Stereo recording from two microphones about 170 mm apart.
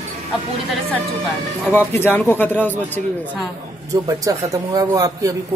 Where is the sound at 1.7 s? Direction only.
10° left (ahead or behind).